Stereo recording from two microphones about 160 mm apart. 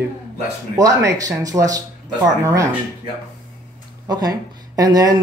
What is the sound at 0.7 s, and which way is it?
Speech, 20° right (ahead or behind).